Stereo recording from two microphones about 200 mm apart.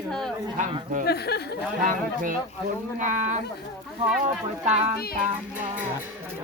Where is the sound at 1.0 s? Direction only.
55° left (ahead or behind).